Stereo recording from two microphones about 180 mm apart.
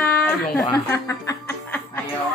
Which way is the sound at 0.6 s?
15° left (ahead or behind).